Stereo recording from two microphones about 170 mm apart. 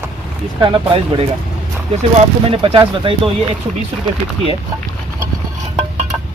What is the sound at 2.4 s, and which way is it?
Speech, 30° right (ahead or behind).